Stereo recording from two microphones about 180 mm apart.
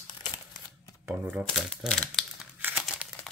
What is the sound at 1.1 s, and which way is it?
Speech, 15° right (ahead or behind).